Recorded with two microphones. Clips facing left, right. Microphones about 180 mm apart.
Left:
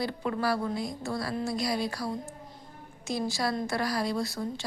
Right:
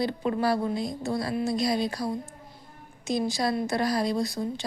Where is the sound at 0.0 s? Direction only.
20° right (ahead or behind).